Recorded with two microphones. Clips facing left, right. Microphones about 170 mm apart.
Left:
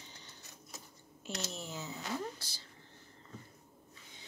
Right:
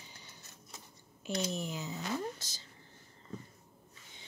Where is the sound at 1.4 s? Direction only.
15° right (ahead or behind).